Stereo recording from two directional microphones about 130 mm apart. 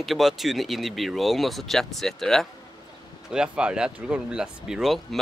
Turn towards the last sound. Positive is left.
turn(degrees=-5)  # may be behind; listen again after turning